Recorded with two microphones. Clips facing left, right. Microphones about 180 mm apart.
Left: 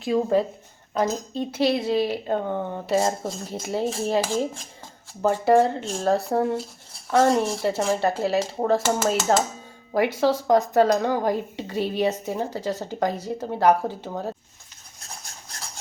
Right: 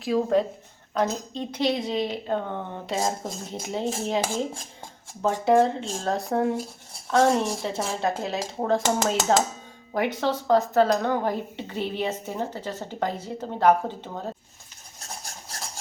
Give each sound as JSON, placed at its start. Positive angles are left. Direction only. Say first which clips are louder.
{"t": 0.0, "sound": "speech", "louder": "left 1 dB", "side_deg": 0}
{"t": 5.2, "sound": "speech", "louder": "left 2 dB", "side_deg": 5}
{"t": 8.8, "sound": "speech", "louder": "left 1 dB", "side_deg": -20}
{"t": 9.9, "sound": "speech", "louder": "left 4 dB", "side_deg": 10}